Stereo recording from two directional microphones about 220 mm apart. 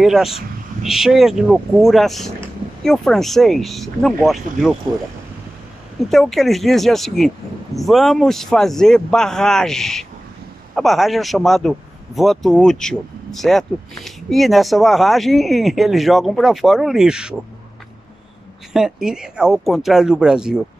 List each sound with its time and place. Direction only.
0.0 s speech: centre (ahead or behind)
6.0 s speech: centre (ahead or behind)
18.7 s speech: 5° right (ahead or behind)